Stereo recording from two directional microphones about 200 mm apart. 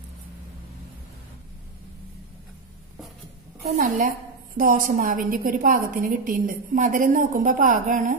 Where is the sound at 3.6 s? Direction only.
40° right (ahead or behind).